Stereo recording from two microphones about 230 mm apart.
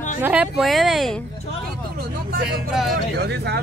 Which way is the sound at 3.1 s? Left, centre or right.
Right.